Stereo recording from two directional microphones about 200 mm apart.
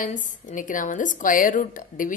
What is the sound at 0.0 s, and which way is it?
A woman's voice, 40° left (ahead or behind).